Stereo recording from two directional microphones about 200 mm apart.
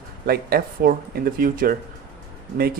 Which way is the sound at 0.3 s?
50° right (ahead or behind).